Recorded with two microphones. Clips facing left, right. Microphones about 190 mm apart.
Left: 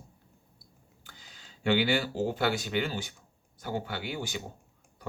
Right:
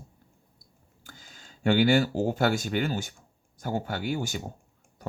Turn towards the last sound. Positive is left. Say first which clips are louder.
# right 5 dB
turn(degrees=-45)  # may be behind; listen again after turning